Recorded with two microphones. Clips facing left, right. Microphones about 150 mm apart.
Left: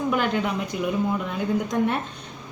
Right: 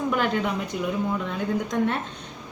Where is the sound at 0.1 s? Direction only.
Centre (ahead or behind).